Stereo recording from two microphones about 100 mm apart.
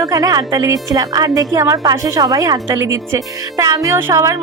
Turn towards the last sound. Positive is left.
turn(degrees=-30)  # may be behind; listen again after turning